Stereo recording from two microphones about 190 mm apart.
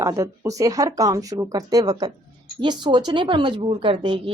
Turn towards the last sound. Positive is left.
turn(degrees=-30)  # may be behind; listen again after turning